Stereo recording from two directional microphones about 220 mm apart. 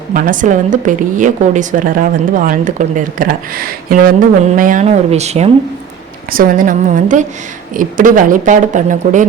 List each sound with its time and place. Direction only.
0.1 s a woman's voice: 40° right (ahead or behind)